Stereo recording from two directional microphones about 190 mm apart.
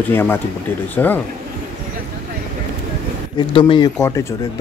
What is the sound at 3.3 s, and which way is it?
Speech, 25° left (ahead or behind).